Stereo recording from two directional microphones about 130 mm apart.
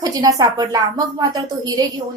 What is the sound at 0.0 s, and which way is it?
A woman's voice, 30° right (ahead or behind).